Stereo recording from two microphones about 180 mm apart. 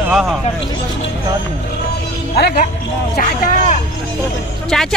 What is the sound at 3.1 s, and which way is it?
Speech, 50° left (ahead or behind).